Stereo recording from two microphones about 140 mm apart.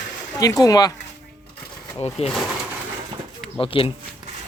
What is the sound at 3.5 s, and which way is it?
Speech, 40° left (ahead or behind).